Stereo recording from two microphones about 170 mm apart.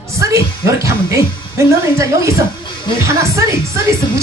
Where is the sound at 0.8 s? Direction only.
15° right (ahead or behind).